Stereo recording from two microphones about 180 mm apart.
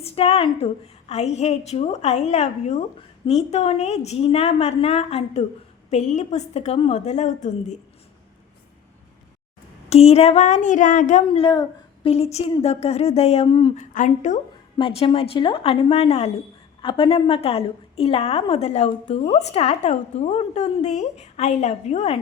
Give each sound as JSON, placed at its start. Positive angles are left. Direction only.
{"t": 0.0, "sound": "a woman's voice", "side_deg": 35}
{"t": 9.9, "sound": "a woman's voice", "side_deg": 35}
{"t": 11.3, "sound": "a woman's voice", "side_deg": 30}
{"t": 13.9, "sound": "a woman's voice", "side_deg": 45}
{"t": 14.8, "sound": "a woman's voice", "side_deg": 30}